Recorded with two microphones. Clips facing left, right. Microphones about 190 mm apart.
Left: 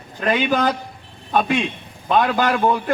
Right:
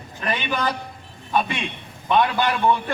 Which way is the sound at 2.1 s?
45° left (ahead or behind).